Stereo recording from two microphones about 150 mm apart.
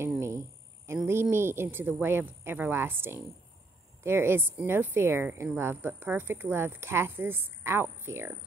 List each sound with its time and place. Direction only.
0.0 s cricket: 20° right (ahead or behind)
0.9 s a sound: 15° right (ahead or behind)
1.3 s a woman's voice: 15° right (ahead or behind)